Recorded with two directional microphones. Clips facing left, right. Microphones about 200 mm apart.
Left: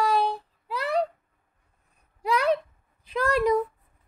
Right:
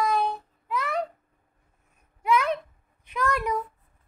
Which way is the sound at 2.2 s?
35° left (ahead or behind).